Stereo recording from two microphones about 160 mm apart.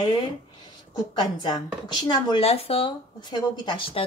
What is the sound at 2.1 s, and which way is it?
Speech, 35° left (ahead or behind).